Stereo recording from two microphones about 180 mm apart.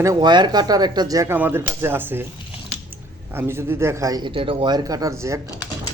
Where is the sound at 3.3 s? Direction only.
15° right (ahead or behind).